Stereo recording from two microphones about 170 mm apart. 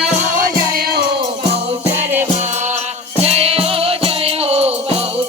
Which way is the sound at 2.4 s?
40° right (ahead or behind).